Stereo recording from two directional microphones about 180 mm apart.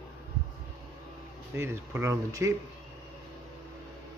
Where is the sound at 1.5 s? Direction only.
15° right (ahead or behind).